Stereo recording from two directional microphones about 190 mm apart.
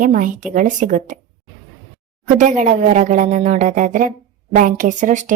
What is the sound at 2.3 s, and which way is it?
Speech, 40° right (ahead or behind).